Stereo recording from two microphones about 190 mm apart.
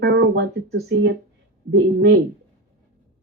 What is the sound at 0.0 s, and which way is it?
Speech, 70° right (ahead or behind).